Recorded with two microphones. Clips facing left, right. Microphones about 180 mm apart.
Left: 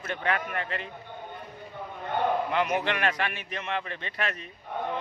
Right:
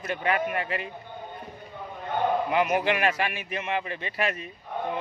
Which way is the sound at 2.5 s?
10° right (ahead or behind).